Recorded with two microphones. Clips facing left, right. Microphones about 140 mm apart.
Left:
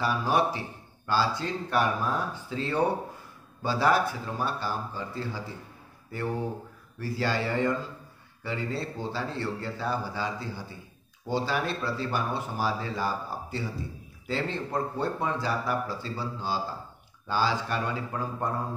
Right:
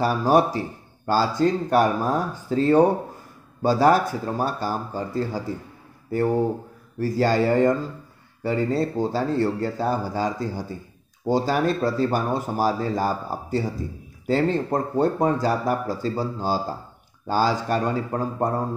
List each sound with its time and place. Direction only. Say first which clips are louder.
0.0 s speech: right 7 dB; 40° right (ahead or behind)